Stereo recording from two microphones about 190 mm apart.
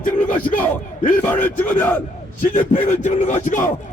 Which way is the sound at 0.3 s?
10° left (ahead or behind).